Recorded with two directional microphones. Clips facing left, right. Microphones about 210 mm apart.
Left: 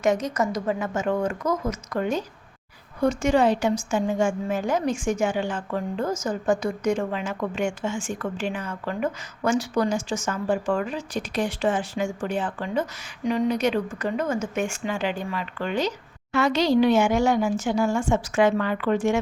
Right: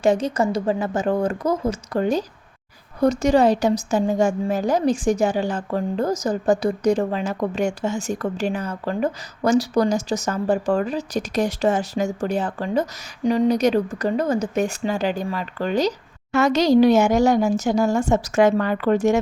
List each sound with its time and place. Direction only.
0.0 s a woman's voice: 30° right (ahead or behind)